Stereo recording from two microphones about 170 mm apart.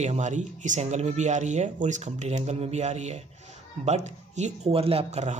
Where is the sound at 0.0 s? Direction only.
45° right (ahead or behind).